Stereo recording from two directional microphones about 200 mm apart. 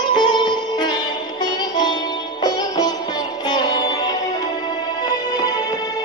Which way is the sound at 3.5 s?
20° left (ahead or behind).